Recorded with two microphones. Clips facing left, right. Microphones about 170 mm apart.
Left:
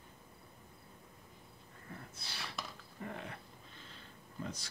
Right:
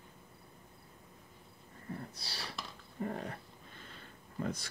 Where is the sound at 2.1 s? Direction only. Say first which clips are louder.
Right 2 dB; 35° right (ahead or behind).